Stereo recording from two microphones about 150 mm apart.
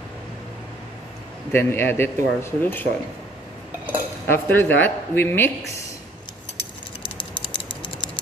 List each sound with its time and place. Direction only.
1.5 s speech: 15° left (ahead or behind)
4.3 s speech: 15° left (ahead or behind)
7.0 s typing: 35° left (ahead or behind)